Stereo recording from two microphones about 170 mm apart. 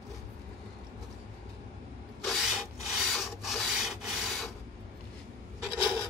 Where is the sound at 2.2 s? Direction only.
Centre (ahead or behind).